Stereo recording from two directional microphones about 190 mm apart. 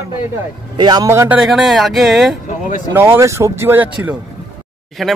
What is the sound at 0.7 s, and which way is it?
Speech, 20° right (ahead or behind).